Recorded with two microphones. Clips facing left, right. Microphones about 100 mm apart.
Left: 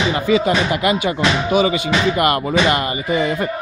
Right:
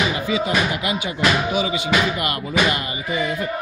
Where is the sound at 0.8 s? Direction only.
55° left (ahead or behind).